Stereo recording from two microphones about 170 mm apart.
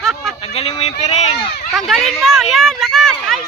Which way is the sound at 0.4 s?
35° left (ahead or behind).